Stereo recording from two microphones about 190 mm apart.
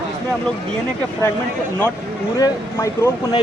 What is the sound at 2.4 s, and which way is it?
Speech, 15° left (ahead or behind).